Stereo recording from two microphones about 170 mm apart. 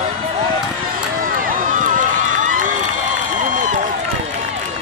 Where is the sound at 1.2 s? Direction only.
50° right (ahead or behind).